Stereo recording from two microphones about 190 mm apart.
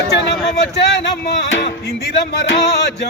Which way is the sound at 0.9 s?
65° left (ahead or behind).